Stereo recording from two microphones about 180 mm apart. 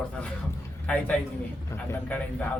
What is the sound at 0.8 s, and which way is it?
Speech, 5° left (ahead or behind).